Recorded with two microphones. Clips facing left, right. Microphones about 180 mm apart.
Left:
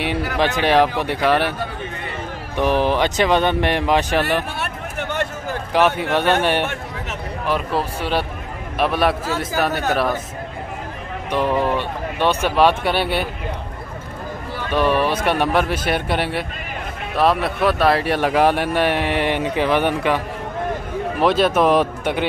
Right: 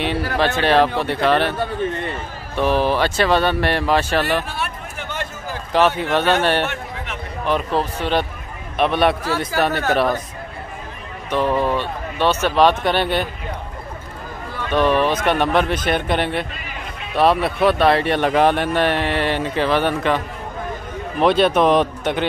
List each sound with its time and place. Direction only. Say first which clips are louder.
0.4 s speech: even; 15° left (ahead or behind)
2.5 s speech: even; 15° left (ahead or behind)
4.9 s a sound: left 5 dB; 60° left (ahead or behind)
5.7 s a man's voice: right 1 dB; 10° left (ahead or behind)
11.2 s speech: even; 15° left (ahead or behind)
14.7 s speech: right 1 dB; 10° left (ahead or behind)
21.2 s speech: right 1 dB; centre (ahead or behind)